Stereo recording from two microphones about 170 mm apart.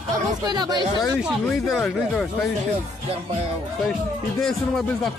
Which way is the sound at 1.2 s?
Centre (ahead or behind).